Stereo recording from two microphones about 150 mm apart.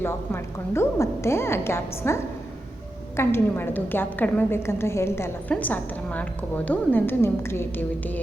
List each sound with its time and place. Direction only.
0.0 s a woman's voice: 15° left (ahead or behind)